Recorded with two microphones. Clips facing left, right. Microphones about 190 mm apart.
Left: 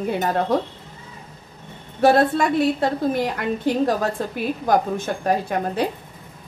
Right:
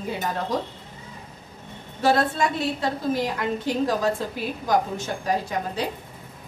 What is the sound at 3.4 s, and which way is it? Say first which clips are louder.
A woman's voice: left 4 dB; 60° left (ahead or behind).